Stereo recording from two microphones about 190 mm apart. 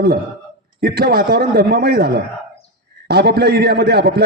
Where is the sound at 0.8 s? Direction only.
55° right (ahead or behind).